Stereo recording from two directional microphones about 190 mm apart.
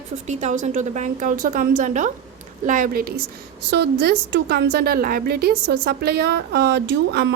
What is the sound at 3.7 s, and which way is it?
A woman's voice, 65° right (ahead or behind).